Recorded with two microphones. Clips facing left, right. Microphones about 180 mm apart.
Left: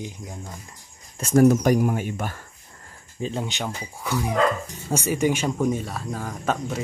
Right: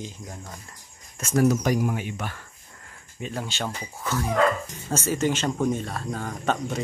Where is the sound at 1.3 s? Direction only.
45° left (ahead or behind).